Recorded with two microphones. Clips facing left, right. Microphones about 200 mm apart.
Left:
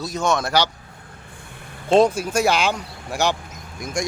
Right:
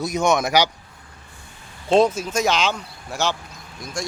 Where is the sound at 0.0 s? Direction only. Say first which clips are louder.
Right 2 dB; 15° right (ahead or behind).